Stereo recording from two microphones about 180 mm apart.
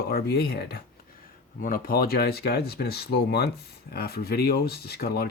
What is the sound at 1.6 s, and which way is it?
Speech, 55° left (ahead or behind).